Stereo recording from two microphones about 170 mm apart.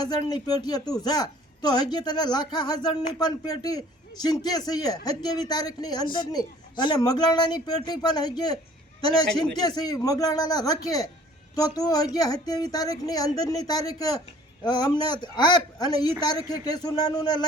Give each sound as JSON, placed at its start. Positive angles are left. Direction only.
{"t": 0.0, "sound": "a man's voice", "side_deg": 25}